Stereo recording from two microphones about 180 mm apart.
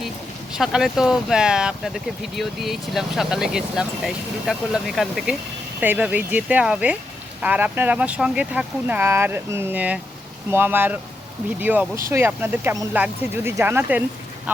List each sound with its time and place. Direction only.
0.5 s speech: 5° right (ahead or behind)